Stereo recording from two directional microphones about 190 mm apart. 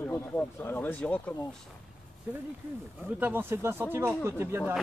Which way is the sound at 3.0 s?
10° right (ahead or behind).